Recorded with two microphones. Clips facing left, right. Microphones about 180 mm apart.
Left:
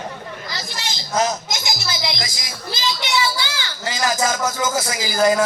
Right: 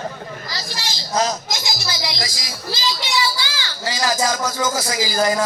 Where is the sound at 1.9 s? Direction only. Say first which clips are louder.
Even; 20° left (ahead or behind).